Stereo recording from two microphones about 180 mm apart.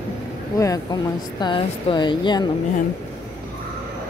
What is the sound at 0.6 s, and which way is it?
Speech, 20° left (ahead or behind).